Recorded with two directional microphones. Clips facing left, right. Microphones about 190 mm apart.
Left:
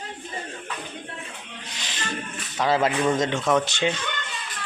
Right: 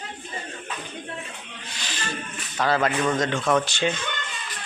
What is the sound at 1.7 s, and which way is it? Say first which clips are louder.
Music: right 3 dB; 20° left (ahead or behind).